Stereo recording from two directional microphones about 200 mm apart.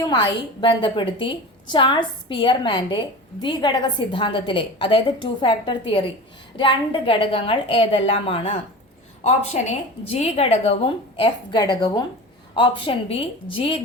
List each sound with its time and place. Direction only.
0.0 s a woman's voice: 20° left (ahead or behind)